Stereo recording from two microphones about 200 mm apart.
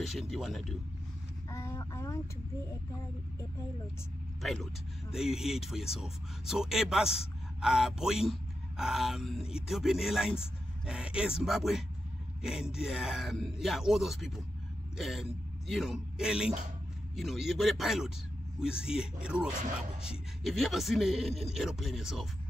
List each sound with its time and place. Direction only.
0.1 s speech: centre (ahead or behind)
1.5 s a sound: 15° left (ahead or behind)
4.4 s a man's voice: centre (ahead or behind)